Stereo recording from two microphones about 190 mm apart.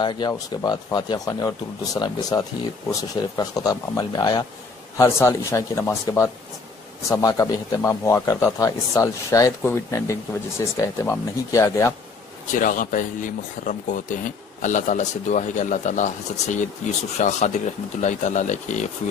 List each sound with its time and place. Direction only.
0.0 s speech: 25° left (ahead or behind)
12.5 s speech: 45° left (ahead or behind)